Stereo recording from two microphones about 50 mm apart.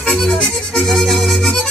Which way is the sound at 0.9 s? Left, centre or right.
Centre.